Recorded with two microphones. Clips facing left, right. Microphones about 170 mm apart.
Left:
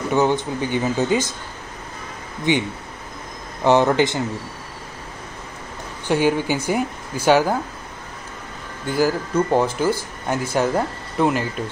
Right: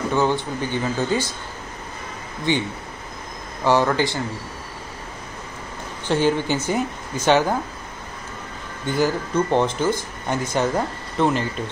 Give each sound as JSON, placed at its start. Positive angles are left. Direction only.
{"t": 0.1, "sound": "speech", "side_deg": 15}
{"t": 2.5, "sound": "speech", "side_deg": 20}
{"t": 3.6, "sound": "speech", "side_deg": 20}
{"t": 6.0, "sound": "speech", "side_deg": 10}
{"t": 8.8, "sound": "speech", "side_deg": 5}